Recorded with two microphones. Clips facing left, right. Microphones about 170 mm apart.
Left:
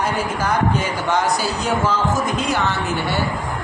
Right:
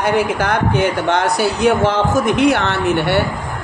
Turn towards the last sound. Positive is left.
turn(degrees=-65)  # may be behind; listen again after turning